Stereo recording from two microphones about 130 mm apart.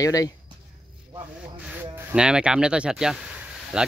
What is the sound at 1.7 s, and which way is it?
Speech, 15° right (ahead or behind).